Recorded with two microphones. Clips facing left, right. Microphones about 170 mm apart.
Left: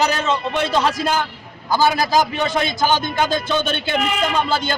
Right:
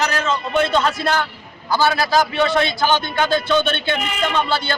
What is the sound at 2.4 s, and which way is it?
Speech, 45° left (ahead or behind).